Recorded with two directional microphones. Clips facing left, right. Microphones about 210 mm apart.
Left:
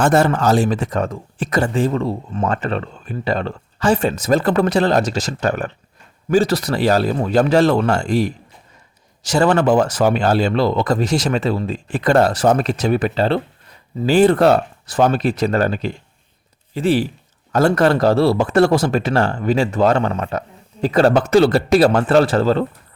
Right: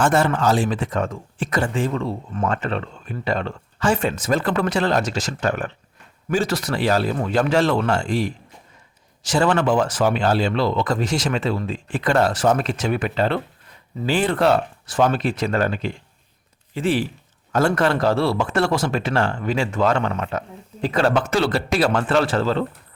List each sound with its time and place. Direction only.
0.0 s speech: 40° left (ahead or behind)